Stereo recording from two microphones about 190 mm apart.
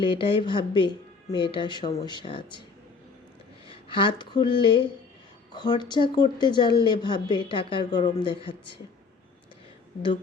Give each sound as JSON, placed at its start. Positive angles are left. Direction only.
{"t": 0.0, "sound": "speech", "side_deg": 25}
{"t": 3.7, "sound": "speech", "side_deg": 25}